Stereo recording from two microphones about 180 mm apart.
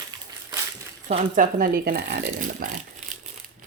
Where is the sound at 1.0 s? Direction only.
45° right (ahead or behind).